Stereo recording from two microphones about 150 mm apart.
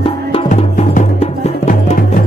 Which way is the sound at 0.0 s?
40° left (ahead or behind).